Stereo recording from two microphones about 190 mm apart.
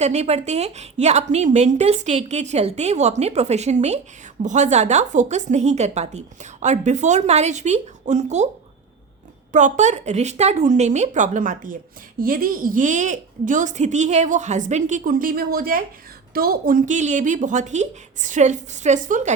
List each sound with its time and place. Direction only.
0.0 s a woman's voice: 35° right (ahead or behind)
9.5 s a woman's voice: 40° right (ahead or behind)